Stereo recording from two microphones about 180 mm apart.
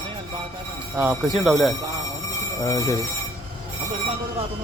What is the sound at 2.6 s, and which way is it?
Speech, 20° left (ahead or behind).